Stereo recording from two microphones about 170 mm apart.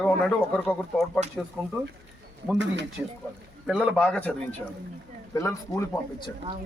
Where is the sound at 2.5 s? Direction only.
90° right.